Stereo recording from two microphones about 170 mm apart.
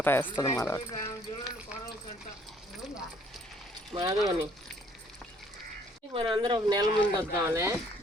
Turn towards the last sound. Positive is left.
turn(degrees=-15)  # may be behind; listen again after turning